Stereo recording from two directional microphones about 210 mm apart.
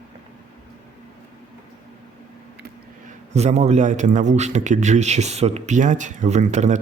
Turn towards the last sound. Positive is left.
turn(degrees=-35)  # may be behind; listen again after turning